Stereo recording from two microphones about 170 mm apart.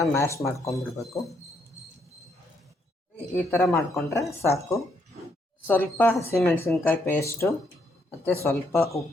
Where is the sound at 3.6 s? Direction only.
Centre (ahead or behind).